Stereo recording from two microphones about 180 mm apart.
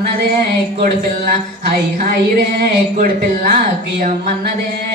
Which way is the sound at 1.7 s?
50° right (ahead or behind).